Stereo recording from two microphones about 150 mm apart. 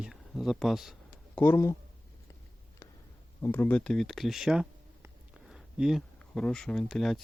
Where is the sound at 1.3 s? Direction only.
15° left (ahead or behind).